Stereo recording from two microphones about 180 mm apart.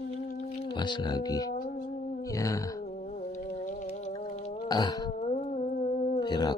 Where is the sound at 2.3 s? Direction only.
20° left (ahead or behind).